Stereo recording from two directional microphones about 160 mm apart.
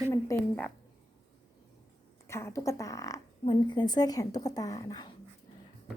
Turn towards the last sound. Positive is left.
turn(degrees=25)  # may be behind; listen again after turning